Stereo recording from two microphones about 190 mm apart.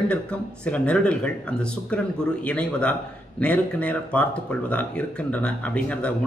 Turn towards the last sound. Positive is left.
turn(degrees=5)  # may be behind; listen again after turning